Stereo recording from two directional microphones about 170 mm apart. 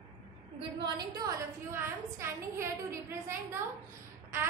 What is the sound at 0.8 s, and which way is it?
A woman's voice, 25° right (ahead or behind).